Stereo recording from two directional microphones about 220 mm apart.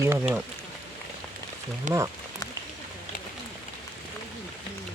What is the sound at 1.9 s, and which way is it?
Speech, 35° right (ahead or behind).